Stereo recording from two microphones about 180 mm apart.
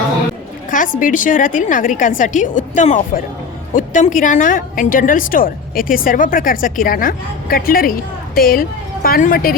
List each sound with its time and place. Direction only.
0.7 s a woman's voice: 45° left (ahead or behind)